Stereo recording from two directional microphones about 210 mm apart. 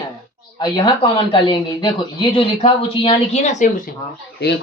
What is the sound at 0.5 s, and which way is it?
Speech, 20° left (ahead or behind).